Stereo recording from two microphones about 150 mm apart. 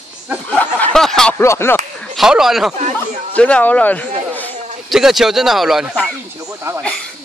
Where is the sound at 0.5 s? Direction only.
5° left (ahead or behind).